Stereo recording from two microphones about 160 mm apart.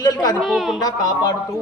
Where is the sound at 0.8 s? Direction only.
25° left (ahead or behind).